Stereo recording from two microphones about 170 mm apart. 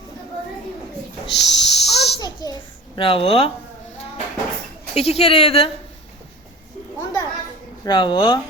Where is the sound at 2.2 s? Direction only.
25° left (ahead or behind).